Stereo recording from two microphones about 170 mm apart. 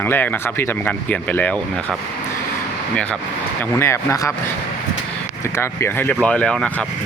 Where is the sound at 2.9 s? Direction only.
5° left (ahead or behind).